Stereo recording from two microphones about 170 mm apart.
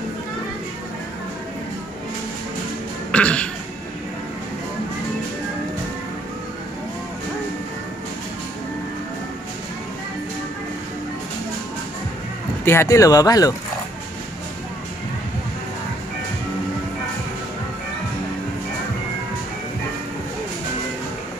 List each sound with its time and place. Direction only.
3.1 s cough: 5° left (ahead or behind)
12.6 s speech: 15° left (ahead or behind)